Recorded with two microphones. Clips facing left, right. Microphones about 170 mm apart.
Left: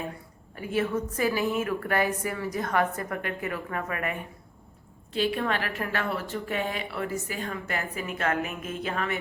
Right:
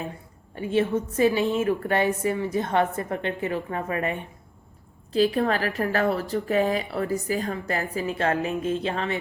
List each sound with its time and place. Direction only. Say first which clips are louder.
0.5 s a woman's voice: right 4 dB; 25° right (ahead or behind)